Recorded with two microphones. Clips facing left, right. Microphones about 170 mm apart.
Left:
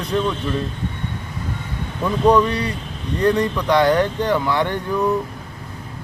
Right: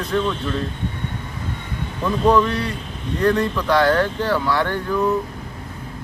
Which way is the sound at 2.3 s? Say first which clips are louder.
Left 1 dB; 15° left (ahead or behind).